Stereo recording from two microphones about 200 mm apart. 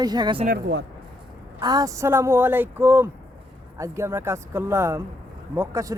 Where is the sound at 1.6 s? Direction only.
20° right (ahead or behind).